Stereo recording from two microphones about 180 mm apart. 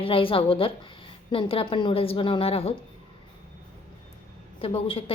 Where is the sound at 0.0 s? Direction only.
30° left (ahead or behind).